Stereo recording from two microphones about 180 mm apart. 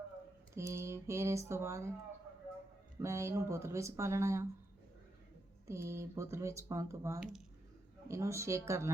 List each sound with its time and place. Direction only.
0.5 s speech: 15° right (ahead or behind)
3.0 s speech: 15° right (ahead or behind)
5.6 s speech: 15° right (ahead or behind)